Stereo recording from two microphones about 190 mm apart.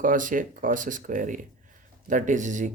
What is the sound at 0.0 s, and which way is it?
Speech, 45° right (ahead or behind).